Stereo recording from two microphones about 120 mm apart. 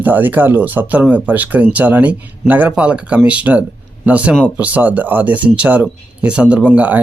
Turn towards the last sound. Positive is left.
turn(degrees=-10)  # may be behind; listen again after turning